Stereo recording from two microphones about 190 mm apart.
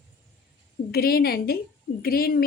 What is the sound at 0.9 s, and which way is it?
A woman's voice, 50° left (ahead or behind).